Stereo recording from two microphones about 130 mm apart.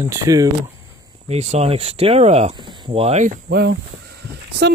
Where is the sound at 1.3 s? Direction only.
55° right (ahead or behind).